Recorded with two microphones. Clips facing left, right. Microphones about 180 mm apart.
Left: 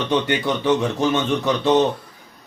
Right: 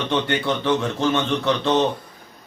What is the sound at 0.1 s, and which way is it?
Speech, 15° left (ahead or behind).